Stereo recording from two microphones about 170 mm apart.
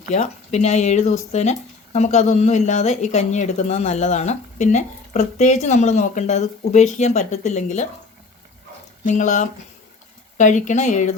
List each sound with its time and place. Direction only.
0.1 s speech: 40° left (ahead or behind)
9.0 s speech: 45° left (ahead or behind)